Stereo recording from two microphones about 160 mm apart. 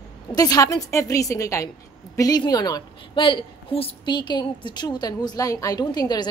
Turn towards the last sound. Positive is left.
turn(degrees=25)  # may be behind; listen again after turning